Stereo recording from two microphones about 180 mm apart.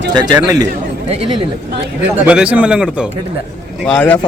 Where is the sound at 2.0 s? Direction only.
5° right (ahead or behind).